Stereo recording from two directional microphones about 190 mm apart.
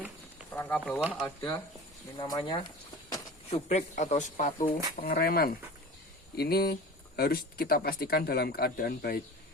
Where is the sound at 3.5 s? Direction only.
35° left (ahead or behind); by 9.2 s 50° left (ahead or behind).